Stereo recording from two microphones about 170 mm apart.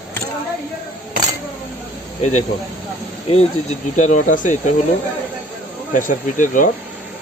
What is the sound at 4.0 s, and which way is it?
Speech, 45° left (ahead or behind).